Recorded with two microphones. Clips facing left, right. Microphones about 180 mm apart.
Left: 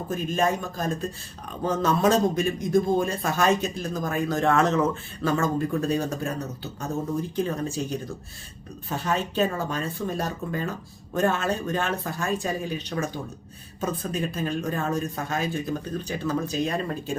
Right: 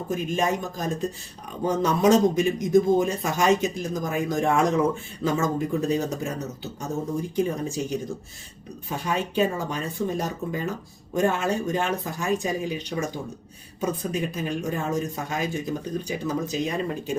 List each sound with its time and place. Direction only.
0.1 s a man's voice: 15° right (ahead or behind)
9.0 s a man's voice: 15° right (ahead or behind)